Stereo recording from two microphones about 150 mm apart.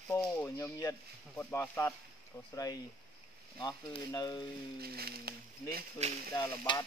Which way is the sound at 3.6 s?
25° left (ahead or behind).